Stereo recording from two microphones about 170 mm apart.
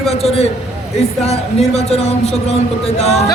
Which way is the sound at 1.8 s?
40° left (ahead or behind).